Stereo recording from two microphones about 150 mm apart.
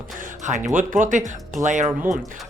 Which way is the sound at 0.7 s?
60° right (ahead or behind).